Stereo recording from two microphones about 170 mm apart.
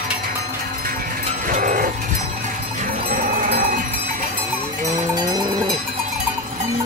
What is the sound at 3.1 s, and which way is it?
Cowbell, 55° right (ahead or behind).